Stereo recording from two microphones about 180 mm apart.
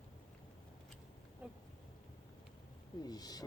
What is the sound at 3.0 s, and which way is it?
Speech, 20° left (ahead or behind).